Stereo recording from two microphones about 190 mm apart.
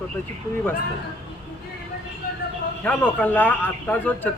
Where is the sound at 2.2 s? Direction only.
50° left (ahead or behind).